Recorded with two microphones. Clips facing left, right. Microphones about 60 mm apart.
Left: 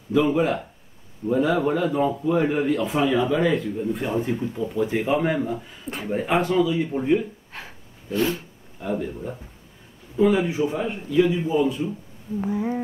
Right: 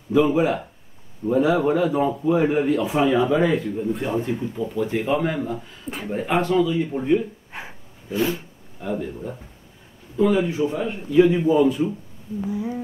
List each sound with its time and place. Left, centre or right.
0.1 s a man's voice: centre
4.2 s speech: centre
5.9 s speech: centre
7.5 s snort: centre
8.1 s speech: centre
11.3 s a man's voice: right
12.4 s a sound: left